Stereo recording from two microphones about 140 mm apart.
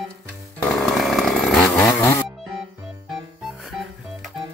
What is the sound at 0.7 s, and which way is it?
Chainsaw, centre (ahead or behind).